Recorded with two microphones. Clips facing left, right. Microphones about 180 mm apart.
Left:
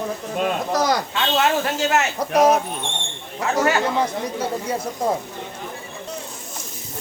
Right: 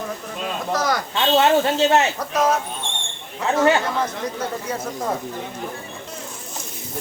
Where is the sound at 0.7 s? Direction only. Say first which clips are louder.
Even; 20° left (ahead or behind).